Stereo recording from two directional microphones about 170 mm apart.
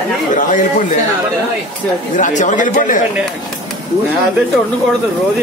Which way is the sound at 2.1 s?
45° left (ahead or behind).